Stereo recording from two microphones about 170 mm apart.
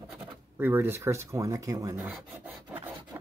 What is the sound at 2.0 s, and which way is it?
Filing, 10° right (ahead or behind).